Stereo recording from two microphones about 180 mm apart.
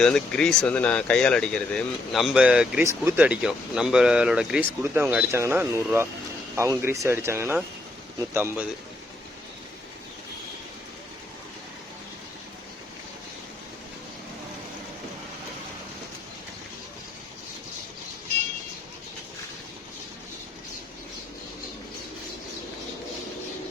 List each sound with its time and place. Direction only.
0.0 s speech: 5° left (ahead or behind); by 8.6 s 10° right (ahead or behind)